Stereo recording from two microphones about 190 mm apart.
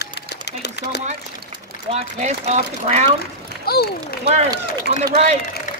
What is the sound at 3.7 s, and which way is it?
Speech, 55° left (ahead or behind).